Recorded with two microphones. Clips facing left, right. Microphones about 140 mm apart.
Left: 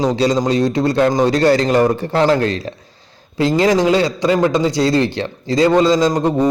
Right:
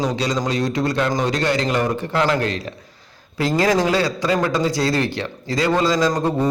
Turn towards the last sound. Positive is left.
turn(degrees=20)  # may be behind; listen again after turning